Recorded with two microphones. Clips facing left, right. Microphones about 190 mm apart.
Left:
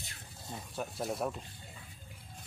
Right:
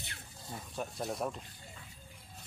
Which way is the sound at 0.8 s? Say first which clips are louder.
Left 1 dB; centre (ahead or behind).